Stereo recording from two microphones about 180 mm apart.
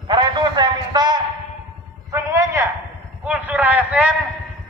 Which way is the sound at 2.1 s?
15° right (ahead or behind).